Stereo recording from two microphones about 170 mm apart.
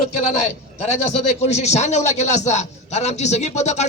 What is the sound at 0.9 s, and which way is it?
A man's voice, 40° left (ahead or behind).